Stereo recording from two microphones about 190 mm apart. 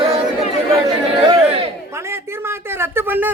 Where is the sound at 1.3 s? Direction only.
30° right (ahead or behind).